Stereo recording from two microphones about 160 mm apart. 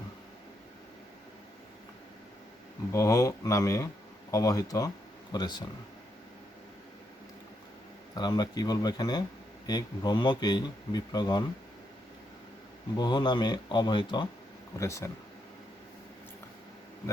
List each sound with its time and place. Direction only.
2.9 s speech: 20° left (ahead or behind)
8.1 s speech: 25° left (ahead or behind)
13.0 s speech: 25° left (ahead or behind)